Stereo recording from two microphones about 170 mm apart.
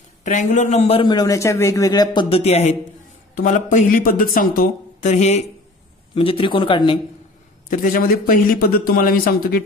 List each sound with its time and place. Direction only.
0.2 s a man's voice: 45° left (ahead or behind); by 2.2 s 20° left (ahead or behind)
2.3 s speech: 35° left (ahead or behind)
3.3 s a man's voice: 50° left (ahead or behind); by 7.0 s 30° left (ahead or behind)
7.7 s a man's voice: 55° left (ahead or behind)